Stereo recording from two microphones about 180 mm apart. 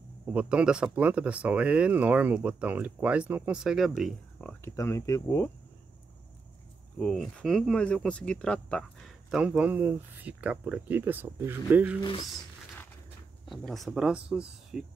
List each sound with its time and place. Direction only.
0.3 s speech: 5° right (ahead or behind); by 5.5 s 15° left (ahead or behind)
7.0 s speech: 5° left (ahead or behind)
12.0 s speech: 25° left (ahead or behind)
13.5 s speech: centre (ahead or behind)